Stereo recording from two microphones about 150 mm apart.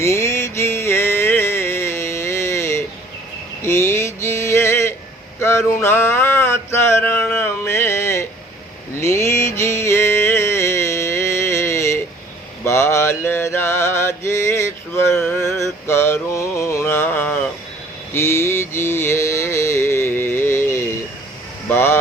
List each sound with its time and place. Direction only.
0.0 s music: 20° left (ahead or behind)
3.6 s male singing: 15° left (ahead or behind)
5.4 s a sound: 20° left (ahead or behind)
9.0 s music: 15° left (ahead or behind)
12.6 s mantra: 15° left (ahead or behind)
21.7 s music: 15° left (ahead or behind)